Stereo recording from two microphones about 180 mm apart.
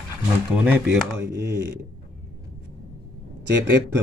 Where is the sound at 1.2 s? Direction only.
70° right (ahead or behind).